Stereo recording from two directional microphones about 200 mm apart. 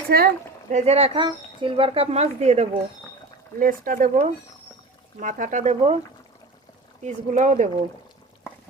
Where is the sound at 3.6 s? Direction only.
45° right (ahead or behind).